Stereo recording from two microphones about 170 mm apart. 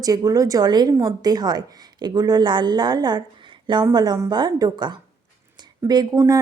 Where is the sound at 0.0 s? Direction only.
20° right (ahead or behind).